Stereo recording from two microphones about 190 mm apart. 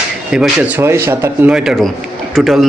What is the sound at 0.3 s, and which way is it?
A man's voice, 5° right (ahead or behind).